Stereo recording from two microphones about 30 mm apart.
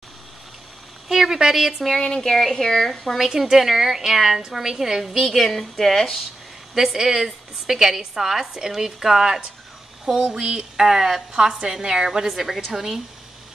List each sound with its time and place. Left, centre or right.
1.0 s a woman's voice: centre
2.2 s speech: centre
3.3 s a woman's voice: centre
5.2 s speech: centre
6.7 s a woman's voice: centre
10.4 s a woman's voice: right